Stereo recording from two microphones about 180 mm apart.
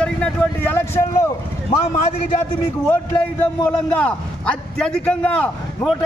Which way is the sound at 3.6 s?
5° left (ahead or behind).